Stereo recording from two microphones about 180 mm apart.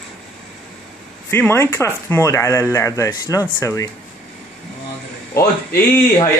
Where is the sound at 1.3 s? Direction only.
15° left (ahead or behind).